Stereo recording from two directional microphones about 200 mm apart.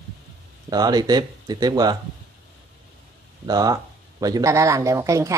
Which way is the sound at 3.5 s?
20° right (ahead or behind).